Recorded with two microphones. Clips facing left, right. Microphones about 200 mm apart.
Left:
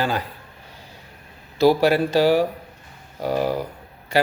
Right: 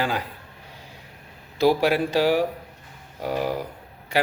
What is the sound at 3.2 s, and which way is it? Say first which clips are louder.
Speech: left 3 dB; 40° left (ahead or behind).